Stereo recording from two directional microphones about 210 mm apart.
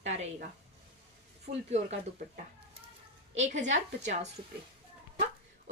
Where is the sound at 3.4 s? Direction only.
35° right (ahead or behind).